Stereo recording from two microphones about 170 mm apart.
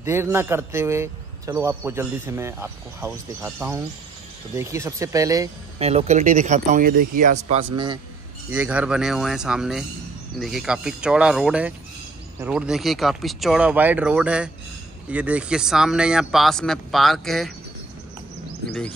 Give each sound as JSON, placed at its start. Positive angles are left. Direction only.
{"t": 0.0, "sound": "speech", "side_deg": -15}
{"t": 5.8, "sound": "speech", "side_deg": -35}
{"t": 7.7, "sound": "a man's voice", "side_deg": -25}
{"t": 8.5, "sound": "speech", "side_deg": -10}